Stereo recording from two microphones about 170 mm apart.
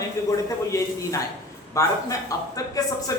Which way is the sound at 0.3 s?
20° left (ahead or behind).